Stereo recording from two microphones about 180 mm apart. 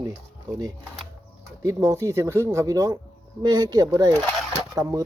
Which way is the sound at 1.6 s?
15° right (ahead or behind).